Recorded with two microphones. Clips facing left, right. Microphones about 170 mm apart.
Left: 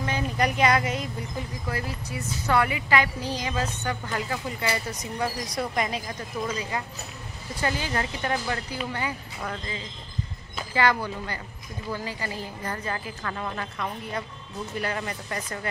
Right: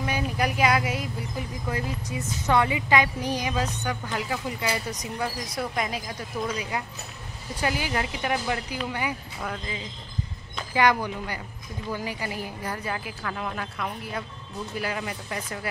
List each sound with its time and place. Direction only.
0.0 s vehicle: 5° right (ahead or behind)
1.7 s a woman's voice: 15° right (ahead or behind)
5.6 s a woman's voice: centre (ahead or behind)
10.7 s a woman's voice: 15° right (ahead or behind)